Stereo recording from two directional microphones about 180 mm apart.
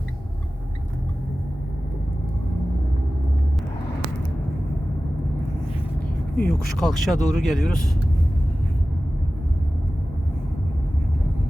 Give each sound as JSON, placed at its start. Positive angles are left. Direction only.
{"t": 6.4, "sound": "speech", "side_deg": 5}